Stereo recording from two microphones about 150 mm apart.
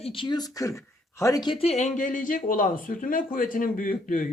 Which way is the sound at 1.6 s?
45° left (ahead or behind).